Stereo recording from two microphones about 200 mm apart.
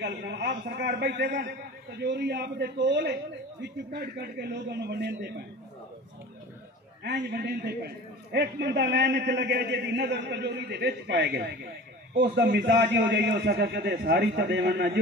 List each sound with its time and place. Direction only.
0.0 s a man's voice: 60° right (ahead or behind)
7.0 s a man's voice: 55° right (ahead or behind)